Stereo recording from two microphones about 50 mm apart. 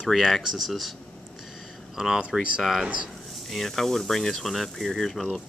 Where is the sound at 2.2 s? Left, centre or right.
Right.